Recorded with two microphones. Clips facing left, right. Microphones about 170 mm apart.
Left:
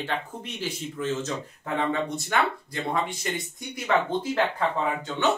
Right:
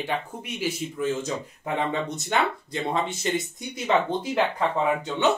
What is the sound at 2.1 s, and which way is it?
Speech, 25° right (ahead or behind).